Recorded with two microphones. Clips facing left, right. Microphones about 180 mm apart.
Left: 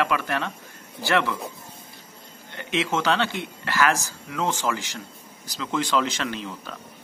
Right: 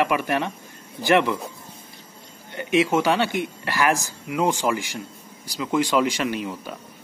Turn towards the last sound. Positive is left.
turn(degrees=-10)  # may be behind; listen again after turning